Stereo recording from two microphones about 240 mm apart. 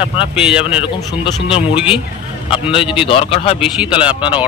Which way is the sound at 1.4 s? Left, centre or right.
Left.